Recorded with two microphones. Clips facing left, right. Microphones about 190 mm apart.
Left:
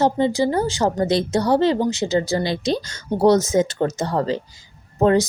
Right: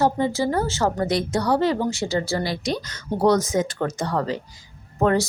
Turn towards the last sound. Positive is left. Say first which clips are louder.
# left 4 dB
turn(degrees=20)  # may be behind; listen again after turning